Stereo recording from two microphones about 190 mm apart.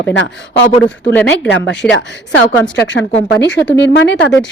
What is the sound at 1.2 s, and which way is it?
Speech, 65° left (ahead or behind).